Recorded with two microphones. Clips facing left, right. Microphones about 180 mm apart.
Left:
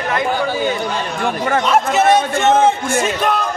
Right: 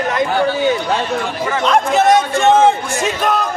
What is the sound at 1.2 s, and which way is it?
Speech, 50° left (ahead or behind).